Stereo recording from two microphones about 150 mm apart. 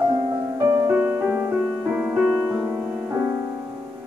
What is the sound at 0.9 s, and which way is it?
Music, 10° right (ahead or behind).